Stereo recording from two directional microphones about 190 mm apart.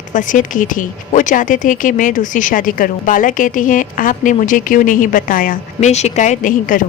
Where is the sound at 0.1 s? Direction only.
45° left (ahead or behind).